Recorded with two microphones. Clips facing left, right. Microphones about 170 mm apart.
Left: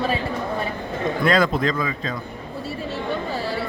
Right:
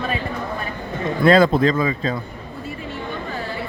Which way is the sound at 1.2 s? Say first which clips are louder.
Right 6 dB; 30° right (ahead or behind).